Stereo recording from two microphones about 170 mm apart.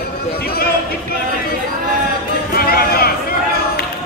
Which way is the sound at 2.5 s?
65° left (ahead or behind).